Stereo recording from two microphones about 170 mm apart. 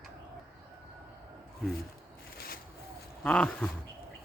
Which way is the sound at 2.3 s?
65° left (ahead or behind).